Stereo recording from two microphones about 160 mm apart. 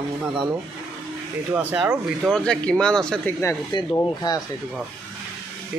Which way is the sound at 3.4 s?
25° left (ahead or behind).